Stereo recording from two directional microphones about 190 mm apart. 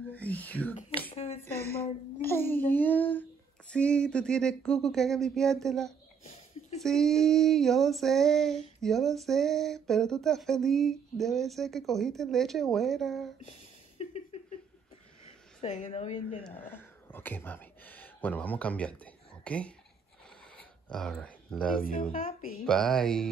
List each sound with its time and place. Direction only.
0.1 s whispering: 10° left (ahead or behind)
1.1 s a sound: 35° left (ahead or behind)
1.4 s a child's voice: 10° left (ahead or behind)
3.7 s female singing: 5° left (ahead or behind)
13.5 s a sound: 35° left (ahead or behind)
15.6 s speech: 35° left (ahead or behind)
16.4 s speech: 10° left (ahead or behind)
20.9 s female singing: 5° left (ahead or behind)
22.1 s a woman's voice: 45° left (ahead or behind)
22.7 s female singing: 5° left (ahead or behind)